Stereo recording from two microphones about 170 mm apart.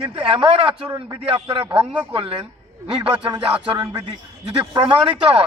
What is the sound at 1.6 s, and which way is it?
Speech, 10° right (ahead or behind).